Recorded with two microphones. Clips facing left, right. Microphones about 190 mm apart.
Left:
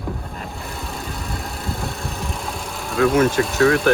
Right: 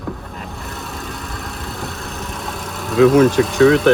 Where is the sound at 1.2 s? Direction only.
30° left (ahead or behind).